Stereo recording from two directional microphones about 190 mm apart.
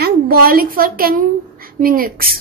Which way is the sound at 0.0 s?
50° right (ahead or behind).